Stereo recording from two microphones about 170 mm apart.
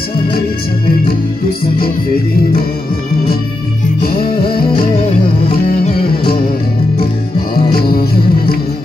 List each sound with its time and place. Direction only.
8.0 s music: 65° left (ahead or behind)